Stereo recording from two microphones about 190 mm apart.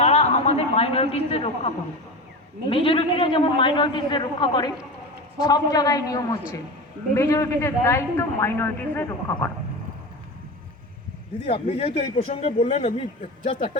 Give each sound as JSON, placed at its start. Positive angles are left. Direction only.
{"t": 0.0, "sound": "a man's voice", "side_deg": 35}
{"t": 11.4, "sound": "speech", "side_deg": 30}